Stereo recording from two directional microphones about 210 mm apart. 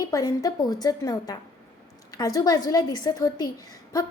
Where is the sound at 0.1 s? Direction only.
15° left (ahead or behind).